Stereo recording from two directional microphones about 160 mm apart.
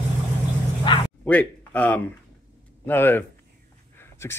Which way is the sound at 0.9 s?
30° left (ahead or behind).